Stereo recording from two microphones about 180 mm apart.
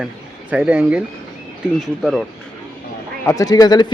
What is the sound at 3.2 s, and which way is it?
Speech, 20° left (ahead or behind).